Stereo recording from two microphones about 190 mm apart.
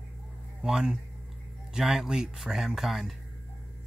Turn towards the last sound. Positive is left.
turn(degrees=0)  # may be behind; listen again after turning